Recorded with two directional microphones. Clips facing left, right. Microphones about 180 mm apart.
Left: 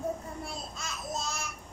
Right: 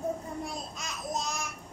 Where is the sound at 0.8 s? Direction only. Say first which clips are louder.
Right 2 dB; 15° right (ahead or behind).